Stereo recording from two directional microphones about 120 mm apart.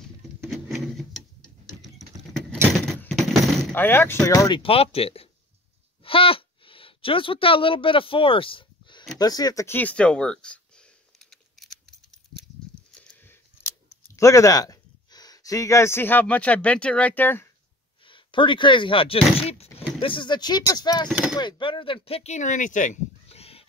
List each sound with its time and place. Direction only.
0.5 s a sound: centre (ahead or behind)
1.8 s typing: centre (ahead or behind)
3.7 s speech: 15° left (ahead or behind)
4.2 s speech: 30° left (ahead or behind)
4.6 s speech: 55° left (ahead or behind)
9.2 s speech: 30° left (ahead or behind)
9.7 s a sound: 15° left (ahead or behind)
12.9 s a sound: 15° left (ahead or behind)
18.0 s speech: 45° left (ahead or behind)
21.1 s speech: 10° right (ahead or behind)
21.4 s speech: 40° left (ahead or behind)